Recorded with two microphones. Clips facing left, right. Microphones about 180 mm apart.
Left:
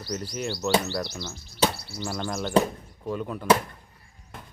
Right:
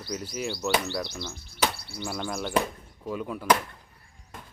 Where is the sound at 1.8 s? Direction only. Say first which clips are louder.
Left 2 dB; 55° right (ahead or behind).